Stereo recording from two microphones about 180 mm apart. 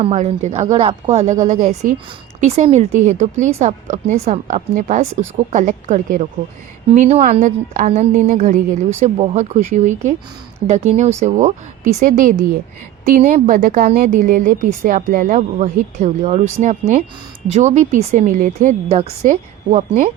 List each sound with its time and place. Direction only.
0.0 s a woman's voice: 40° right (ahead or behind)